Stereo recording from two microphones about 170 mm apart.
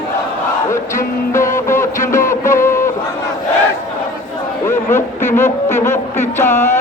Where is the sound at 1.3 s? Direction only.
15° left (ahead or behind).